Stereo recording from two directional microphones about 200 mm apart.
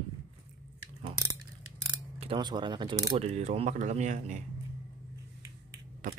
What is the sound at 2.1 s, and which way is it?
Speech, 25° right (ahead or behind).